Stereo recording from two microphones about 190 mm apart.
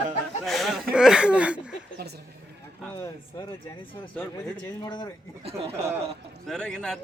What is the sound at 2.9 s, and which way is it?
Speech, 25° left (ahead or behind).